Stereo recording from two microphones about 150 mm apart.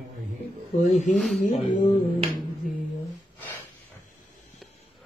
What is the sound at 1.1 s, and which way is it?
Speech, centre (ahead or behind).